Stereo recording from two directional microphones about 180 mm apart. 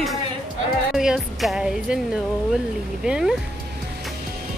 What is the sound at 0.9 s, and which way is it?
Speech, centre (ahead or behind).